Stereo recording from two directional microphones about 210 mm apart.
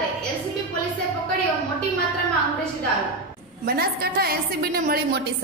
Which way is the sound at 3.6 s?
45° right (ahead or behind).